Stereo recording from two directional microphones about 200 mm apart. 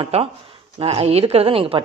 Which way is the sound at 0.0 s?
25° right (ahead or behind).